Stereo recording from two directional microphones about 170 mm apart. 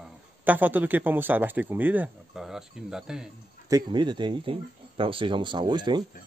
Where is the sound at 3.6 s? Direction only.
25° right (ahead or behind).